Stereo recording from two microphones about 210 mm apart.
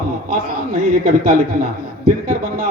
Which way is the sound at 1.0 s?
40° right (ahead or behind).